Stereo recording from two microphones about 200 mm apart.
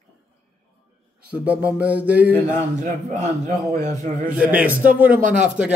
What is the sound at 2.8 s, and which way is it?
Speech, 40° right (ahead or behind).